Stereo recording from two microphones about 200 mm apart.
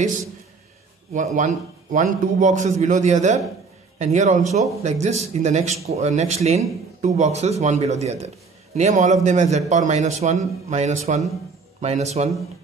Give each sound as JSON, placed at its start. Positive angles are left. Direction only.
{"t": 1.1, "sound": "a man's voice", "side_deg": -40}